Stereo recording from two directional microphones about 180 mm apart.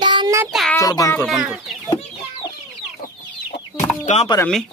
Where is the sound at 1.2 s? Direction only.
5° right (ahead or behind).